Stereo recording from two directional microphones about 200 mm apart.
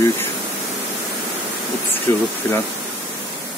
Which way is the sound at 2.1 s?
10° left (ahead or behind).